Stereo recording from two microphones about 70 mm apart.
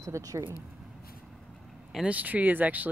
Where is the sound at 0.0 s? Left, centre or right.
Right.